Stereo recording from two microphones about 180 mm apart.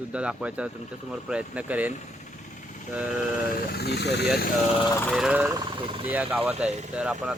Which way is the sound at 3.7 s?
65° left (ahead or behind).